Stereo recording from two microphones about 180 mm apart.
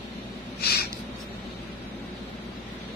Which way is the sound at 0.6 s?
60° left (ahead or behind).